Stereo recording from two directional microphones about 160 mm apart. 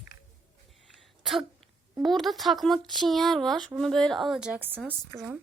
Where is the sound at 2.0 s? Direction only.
Centre (ahead or behind).